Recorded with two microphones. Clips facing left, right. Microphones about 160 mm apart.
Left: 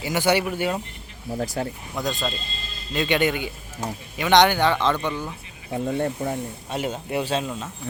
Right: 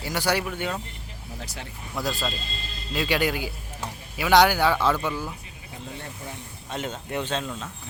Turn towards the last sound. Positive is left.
turn(degrees=5)  # may be behind; listen again after turning